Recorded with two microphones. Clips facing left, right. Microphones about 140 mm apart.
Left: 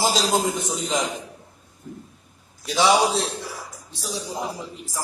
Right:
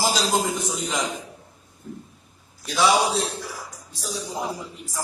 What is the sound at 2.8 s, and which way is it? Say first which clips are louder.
A man's voice: left 1 dB; centre (ahead or behind).